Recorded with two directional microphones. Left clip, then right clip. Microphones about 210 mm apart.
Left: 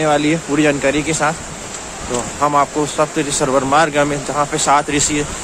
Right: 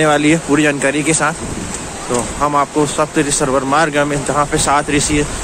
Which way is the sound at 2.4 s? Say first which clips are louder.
Even; 10° left (ahead or behind).